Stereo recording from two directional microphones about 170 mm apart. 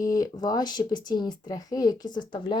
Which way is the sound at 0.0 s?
20° left (ahead or behind).